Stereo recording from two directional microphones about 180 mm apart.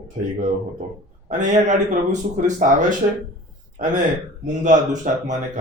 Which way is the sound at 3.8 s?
45° right (ahead or behind).